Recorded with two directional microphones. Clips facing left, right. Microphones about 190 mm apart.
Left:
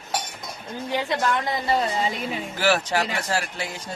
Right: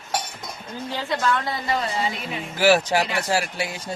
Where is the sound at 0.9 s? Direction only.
15° left (ahead or behind).